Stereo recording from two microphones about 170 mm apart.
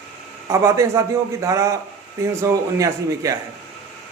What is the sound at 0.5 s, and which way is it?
A man's voice, 15° right (ahead or behind).